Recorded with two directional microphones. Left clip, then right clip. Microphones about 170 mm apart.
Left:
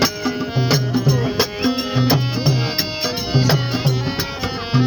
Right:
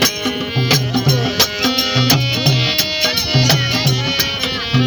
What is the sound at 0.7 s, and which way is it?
Music, 75° left (ahead or behind).